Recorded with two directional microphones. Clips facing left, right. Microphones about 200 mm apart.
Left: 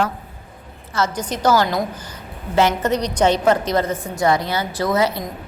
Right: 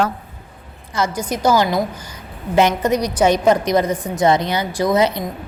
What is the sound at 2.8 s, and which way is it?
A woman's voice, 10° right (ahead or behind).